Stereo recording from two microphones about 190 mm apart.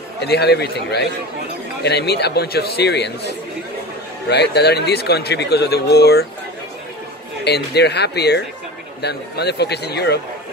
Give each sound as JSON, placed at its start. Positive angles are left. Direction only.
{"t": 0.2, "sound": "speech", "side_deg": 60}
{"t": 4.3, "sound": "speech", "side_deg": 60}
{"t": 7.4, "sound": "speech", "side_deg": 60}